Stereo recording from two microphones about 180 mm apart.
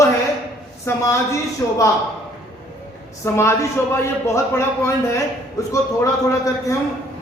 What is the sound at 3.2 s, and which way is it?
A man's voice, 15° left (ahead or behind).